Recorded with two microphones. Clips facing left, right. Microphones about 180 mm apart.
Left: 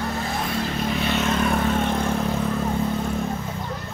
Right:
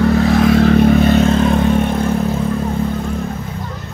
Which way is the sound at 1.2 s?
25° right (ahead or behind).